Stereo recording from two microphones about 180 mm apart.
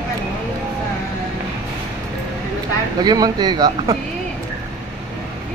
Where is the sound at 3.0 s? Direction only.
20° right (ahead or behind).